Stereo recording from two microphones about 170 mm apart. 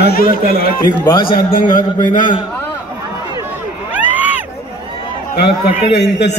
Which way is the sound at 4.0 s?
10° right (ahead or behind).